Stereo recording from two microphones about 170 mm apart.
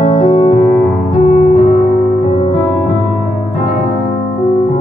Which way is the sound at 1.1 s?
35° left (ahead or behind).